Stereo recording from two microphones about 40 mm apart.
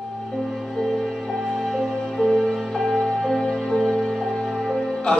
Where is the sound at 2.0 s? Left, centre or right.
Centre.